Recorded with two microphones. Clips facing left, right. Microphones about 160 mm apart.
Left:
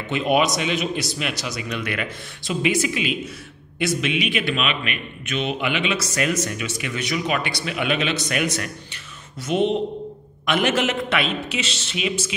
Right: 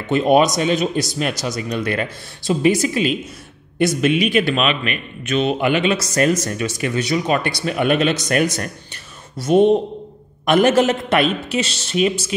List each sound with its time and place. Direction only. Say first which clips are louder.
0.1 s a man's voice: right 6 dB; 40° right (ahead or behind)